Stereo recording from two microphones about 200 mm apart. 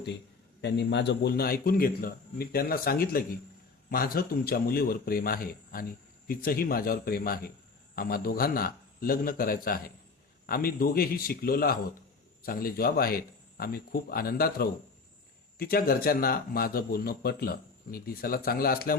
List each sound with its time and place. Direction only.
0.6 s speech: 60° left (ahead or behind)